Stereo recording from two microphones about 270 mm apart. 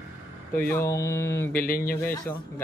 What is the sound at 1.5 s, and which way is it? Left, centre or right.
Speech, left.